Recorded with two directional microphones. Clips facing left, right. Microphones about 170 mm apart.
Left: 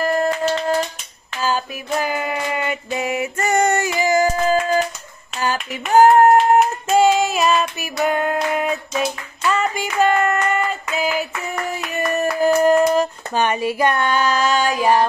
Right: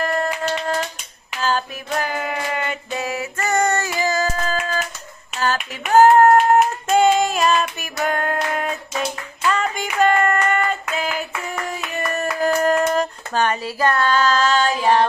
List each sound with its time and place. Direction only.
0.0 s a sound: 5° left (ahead or behind)
1.4 s female singing: 10° left (ahead or behind)
5.4 s hands: 10° left (ahead or behind)
7.8 s clapping: 5° left (ahead or behind)
12.0 s hands: 5° left (ahead or behind)